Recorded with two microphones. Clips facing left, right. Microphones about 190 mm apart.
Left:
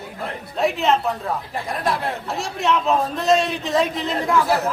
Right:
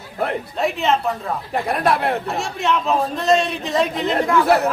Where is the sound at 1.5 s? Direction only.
65° right (ahead or behind).